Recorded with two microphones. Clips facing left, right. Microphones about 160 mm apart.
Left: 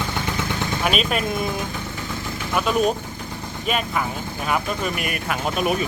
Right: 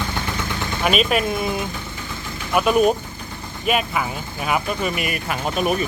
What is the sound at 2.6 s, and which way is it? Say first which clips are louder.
Speech: right 4 dB; 10° right (ahead or behind).